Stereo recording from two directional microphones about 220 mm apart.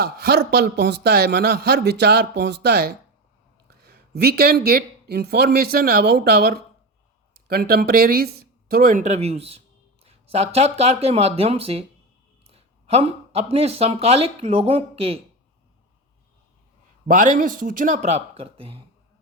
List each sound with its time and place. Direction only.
0.0 s a man's voice: 45° right (ahead or behind); by 15.2 s 25° right (ahead or behind)
17.1 s speech: 35° right (ahead or behind)